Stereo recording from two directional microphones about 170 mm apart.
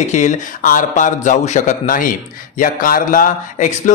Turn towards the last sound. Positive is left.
turn(degrees=45)  # may be behind; listen again after turning